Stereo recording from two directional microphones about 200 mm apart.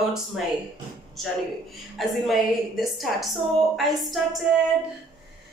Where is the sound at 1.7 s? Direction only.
Centre (ahead or behind).